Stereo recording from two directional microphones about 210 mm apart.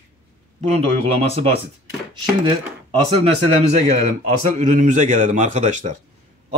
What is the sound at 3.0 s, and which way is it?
Speech, 30° right (ahead or behind).